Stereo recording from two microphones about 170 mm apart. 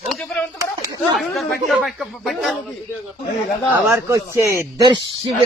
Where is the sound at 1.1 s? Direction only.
Centre (ahead or behind).